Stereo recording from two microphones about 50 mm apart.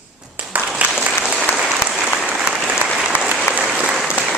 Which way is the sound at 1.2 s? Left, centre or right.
Centre.